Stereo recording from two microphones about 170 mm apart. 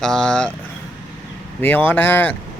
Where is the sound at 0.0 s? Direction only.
5° left (ahead or behind).